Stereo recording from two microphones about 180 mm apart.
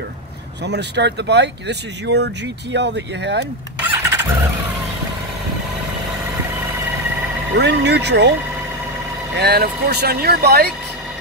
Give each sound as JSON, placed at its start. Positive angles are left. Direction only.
{"t": 0.7, "sound": "speech", "side_deg": -70}
{"t": 4.0, "sound": "vehicle", "side_deg": -15}
{"t": 7.5, "sound": "speech", "side_deg": -70}
{"t": 9.4, "sound": "speech", "side_deg": -65}